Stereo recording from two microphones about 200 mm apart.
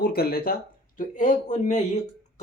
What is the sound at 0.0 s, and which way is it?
Speech, 50° left (ahead or behind).